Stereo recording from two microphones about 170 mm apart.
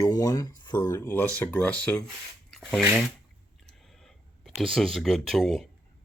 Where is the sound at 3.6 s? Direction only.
Centre (ahead or behind).